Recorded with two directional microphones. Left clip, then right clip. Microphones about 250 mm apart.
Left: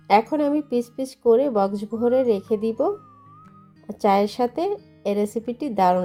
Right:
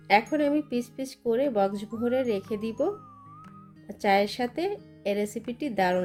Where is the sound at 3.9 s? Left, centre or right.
Centre.